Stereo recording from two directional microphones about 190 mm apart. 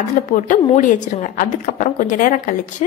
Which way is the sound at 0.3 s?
40° left (ahead or behind).